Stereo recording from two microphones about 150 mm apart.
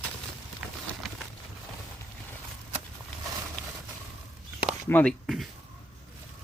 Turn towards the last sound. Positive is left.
turn(degrees=0)  # may be behind; listen again after turning